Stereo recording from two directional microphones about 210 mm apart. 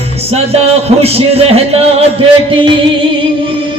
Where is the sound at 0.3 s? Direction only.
30° right (ahead or behind).